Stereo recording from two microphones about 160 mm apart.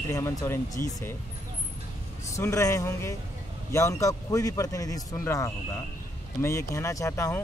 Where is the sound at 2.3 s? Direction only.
20° left (ahead or behind).